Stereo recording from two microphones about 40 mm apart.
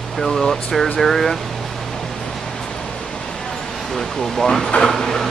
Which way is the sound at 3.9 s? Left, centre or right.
Centre.